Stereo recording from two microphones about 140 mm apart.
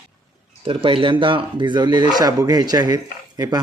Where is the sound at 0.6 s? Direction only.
40° right (ahead or behind).